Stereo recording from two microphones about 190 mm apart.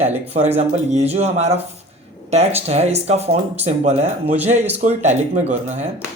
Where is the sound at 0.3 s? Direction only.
35° right (ahead or behind).